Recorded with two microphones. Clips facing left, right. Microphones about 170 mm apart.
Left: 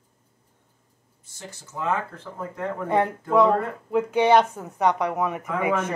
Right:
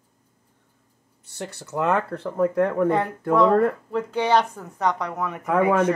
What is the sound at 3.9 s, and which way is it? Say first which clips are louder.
Speech: left 3 dB; 15° left (ahead or behind).